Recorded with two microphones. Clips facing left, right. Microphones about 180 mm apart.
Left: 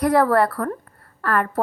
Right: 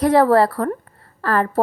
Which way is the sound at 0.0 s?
25° right (ahead or behind).